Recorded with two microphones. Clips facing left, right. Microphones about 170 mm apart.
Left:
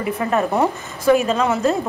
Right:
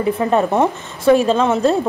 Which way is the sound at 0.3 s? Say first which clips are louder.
Right 1 dB; 30° right (ahead or behind).